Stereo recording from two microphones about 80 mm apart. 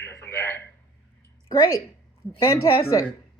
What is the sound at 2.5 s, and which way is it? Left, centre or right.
Speech, left.